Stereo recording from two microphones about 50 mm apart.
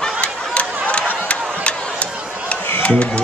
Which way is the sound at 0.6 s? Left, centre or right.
Left.